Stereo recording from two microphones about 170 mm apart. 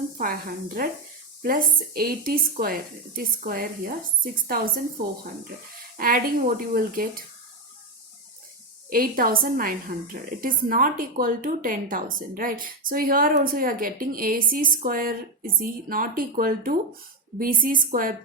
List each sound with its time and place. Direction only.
0.2 s a woman's voice: 55° right (ahead or behind)
6.0 s a woman's voice: 55° right (ahead or behind)
8.9 s a woman's voice: 55° right (ahead or behind)